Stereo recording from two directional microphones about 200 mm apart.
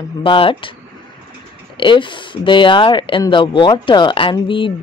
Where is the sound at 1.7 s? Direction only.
25° left (ahead or behind).